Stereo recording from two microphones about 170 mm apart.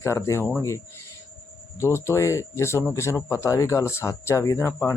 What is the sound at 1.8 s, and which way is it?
Speech, 15° left (ahead or behind).